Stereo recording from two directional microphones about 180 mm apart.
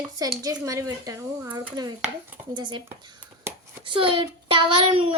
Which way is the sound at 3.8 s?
30° right (ahead or behind).